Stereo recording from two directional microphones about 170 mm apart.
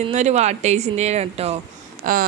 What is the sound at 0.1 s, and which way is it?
Speech, 40° right (ahead or behind).